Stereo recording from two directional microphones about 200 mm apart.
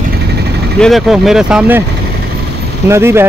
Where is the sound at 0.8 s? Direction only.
Centre (ahead or behind).